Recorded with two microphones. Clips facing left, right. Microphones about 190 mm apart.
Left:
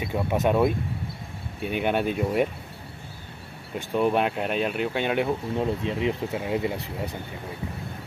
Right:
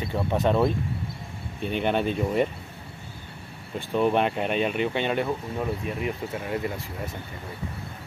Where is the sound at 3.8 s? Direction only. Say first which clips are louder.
Even; 5° left (ahead or behind).